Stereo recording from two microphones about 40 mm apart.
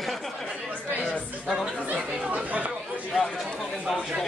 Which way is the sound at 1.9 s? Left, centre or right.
Right.